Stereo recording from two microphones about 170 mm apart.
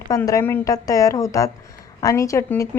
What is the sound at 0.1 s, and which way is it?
A woman's voice, 20° left (ahead or behind).